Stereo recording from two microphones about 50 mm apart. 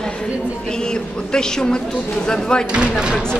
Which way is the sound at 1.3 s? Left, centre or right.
Centre.